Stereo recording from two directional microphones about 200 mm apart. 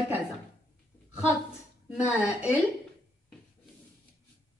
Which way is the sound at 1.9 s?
5° right (ahead or behind).